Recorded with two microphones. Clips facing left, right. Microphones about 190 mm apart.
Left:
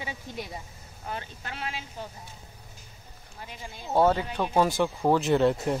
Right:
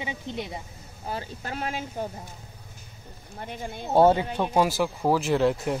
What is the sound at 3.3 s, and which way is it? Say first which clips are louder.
Speech: right 7 dB; 55° right (ahead or behind).